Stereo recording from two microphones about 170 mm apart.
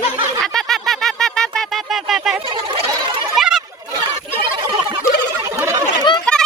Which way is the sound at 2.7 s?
30° right (ahead or behind).